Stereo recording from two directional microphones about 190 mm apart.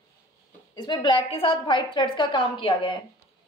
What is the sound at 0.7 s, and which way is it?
A woman's voice, 25° left (ahead or behind).